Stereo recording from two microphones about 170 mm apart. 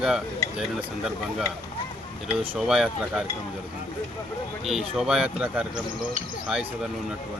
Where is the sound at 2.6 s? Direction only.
Centre (ahead or behind).